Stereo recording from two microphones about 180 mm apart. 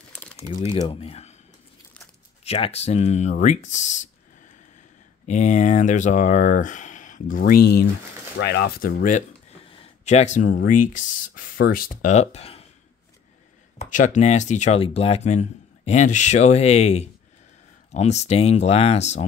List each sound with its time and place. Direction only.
0.8 s speech: 35° left (ahead or behind)
2.4 s speech: 35° left (ahead or behind)
5.2 s speech: 40° left (ahead or behind)
9.7 s speech: 40° left (ahead or behind); by 11.9 s 55° left (ahead or behind)
12.0 s speech: 40° left (ahead or behind)
13.7 s speech: 45° left (ahead or behind)